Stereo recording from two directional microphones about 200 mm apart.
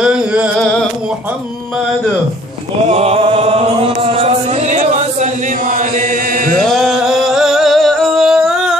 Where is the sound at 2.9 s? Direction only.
30° right (ahead or behind).